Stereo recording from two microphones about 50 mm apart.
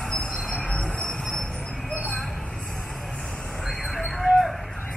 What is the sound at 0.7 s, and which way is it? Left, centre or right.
Train, left.